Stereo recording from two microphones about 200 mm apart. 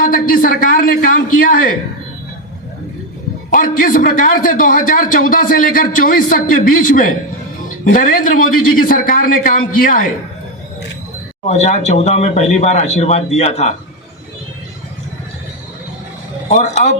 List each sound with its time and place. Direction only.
0.0 s a man's voice: 45° left (ahead or behind)
3.5 s a man's voice: 45° left (ahead or behind)
11.4 s speech: 35° left (ahead or behind)
16.5 s speech: 35° left (ahead or behind)